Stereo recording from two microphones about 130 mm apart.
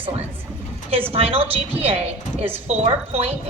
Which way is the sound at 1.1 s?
45° right (ahead or behind).